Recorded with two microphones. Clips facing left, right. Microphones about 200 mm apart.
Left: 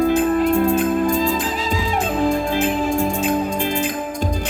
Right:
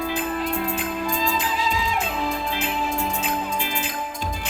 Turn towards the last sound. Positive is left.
turn(degrees=45)  # may be behind; listen again after turning